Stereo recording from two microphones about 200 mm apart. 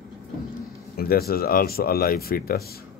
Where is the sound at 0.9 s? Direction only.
50° left (ahead or behind).